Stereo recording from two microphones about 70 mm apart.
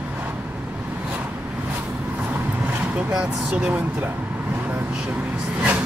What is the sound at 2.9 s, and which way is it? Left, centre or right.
Speech, centre.